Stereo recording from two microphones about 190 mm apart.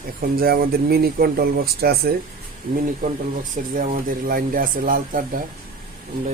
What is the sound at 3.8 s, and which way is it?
Speech, 50° right (ahead or behind).